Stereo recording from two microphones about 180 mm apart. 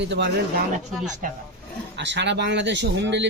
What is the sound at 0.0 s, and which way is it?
Speech, 75° right (ahead or behind).